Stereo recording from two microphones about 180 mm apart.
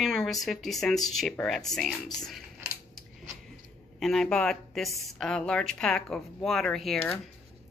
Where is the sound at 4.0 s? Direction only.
5° left (ahead or behind).